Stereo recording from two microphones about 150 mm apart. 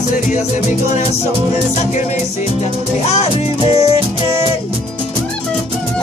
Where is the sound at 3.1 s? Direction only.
45° left (ahead or behind).